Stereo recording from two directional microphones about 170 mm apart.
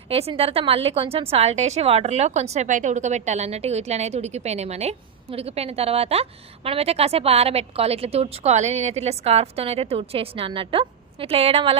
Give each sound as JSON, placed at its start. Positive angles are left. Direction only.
{"t": 0.1, "sound": "a woman's voice", "side_deg": -35}